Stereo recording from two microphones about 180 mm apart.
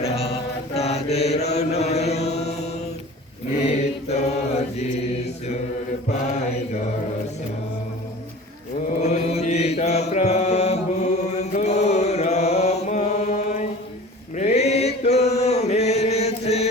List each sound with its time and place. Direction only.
0.7 s mantra: 35° left (ahead or behind)
1.5 s chant: 35° left (ahead or behind)
3.6 s mantra: 35° left (ahead or behind)
9.0 s mantra: 40° left (ahead or behind)